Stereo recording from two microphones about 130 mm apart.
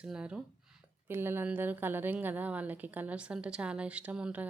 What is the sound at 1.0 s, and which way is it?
A woman's voice, 15° right (ahead or behind).